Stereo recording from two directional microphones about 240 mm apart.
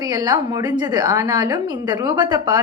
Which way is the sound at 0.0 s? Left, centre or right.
Centre.